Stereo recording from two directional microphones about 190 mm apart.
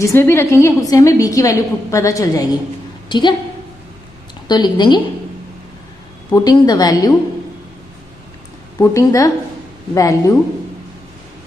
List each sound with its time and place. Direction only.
0.0 s a woman's voice: 15° left (ahead or behind)
4.5 s a woman's voice: 20° left (ahead or behind)
6.3 s a woman's voice: 20° left (ahead or behind)
8.7 s a woman's voice: 15° left (ahead or behind)